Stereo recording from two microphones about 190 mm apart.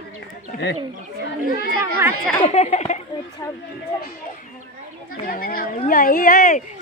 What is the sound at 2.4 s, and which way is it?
Speech, 35° left (ahead or behind).